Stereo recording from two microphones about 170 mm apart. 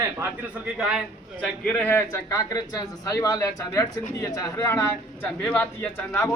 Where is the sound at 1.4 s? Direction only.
10° left (ahead or behind).